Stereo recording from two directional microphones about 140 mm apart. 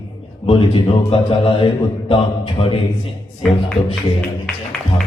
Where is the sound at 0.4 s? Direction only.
40° left (ahead or behind).